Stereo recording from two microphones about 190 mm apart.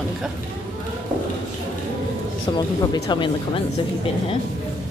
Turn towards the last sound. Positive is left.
turn(degrees=25)  # may be behind; listen again after turning